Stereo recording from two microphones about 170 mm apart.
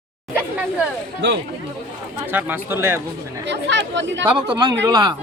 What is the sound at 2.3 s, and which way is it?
Speech, 10° right (ahead or behind).